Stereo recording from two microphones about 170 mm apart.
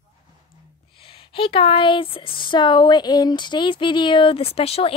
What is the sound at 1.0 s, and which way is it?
Speech, 30° left (ahead or behind).